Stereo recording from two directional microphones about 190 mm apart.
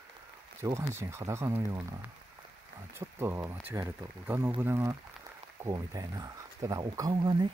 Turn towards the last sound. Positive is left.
turn(degrees=-20)  # may be behind; listen again after turning